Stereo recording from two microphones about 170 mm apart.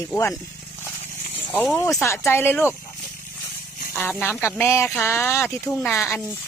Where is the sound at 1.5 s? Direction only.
Centre (ahead or behind).